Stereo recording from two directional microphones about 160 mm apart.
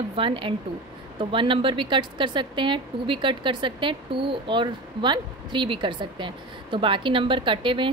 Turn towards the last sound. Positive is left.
turn(degrees=-30)  # may be behind; listen again after turning